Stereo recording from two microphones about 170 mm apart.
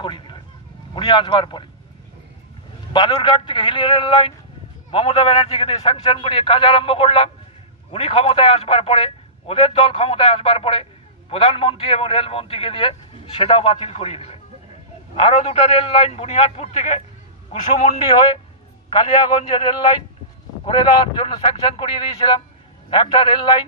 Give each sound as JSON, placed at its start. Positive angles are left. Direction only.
{"t": 0.0, "sound": "vehicle", "side_deg": 30}
{"t": 0.9, "sound": "speech", "side_deg": 25}
{"t": 2.9, "sound": "a man's voice", "side_deg": 25}